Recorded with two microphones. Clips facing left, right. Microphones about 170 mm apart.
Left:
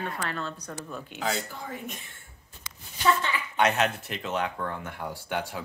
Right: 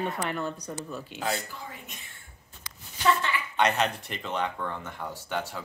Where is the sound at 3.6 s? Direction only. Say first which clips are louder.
Left 1 dB; 5° left (ahead or behind).